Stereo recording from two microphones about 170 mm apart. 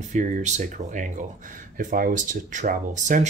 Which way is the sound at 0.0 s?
45° right (ahead or behind).